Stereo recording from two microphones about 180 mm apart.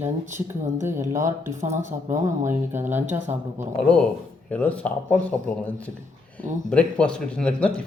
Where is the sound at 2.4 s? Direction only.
10° right (ahead or behind).